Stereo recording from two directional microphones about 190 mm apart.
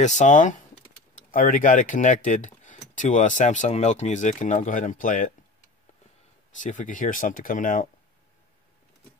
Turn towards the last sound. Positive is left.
turn(degrees=45)  # may be behind; listen again after turning